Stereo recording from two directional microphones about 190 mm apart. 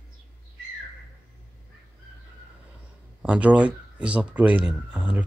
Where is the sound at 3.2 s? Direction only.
5° right (ahead or behind).